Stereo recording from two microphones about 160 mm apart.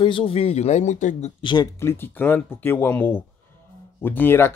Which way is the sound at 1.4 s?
30° left (ahead or behind).